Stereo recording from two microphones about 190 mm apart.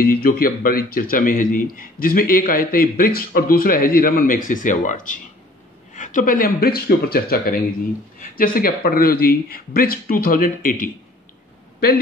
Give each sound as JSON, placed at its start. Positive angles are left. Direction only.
{"t": 0.0, "sound": "speech", "side_deg": 50}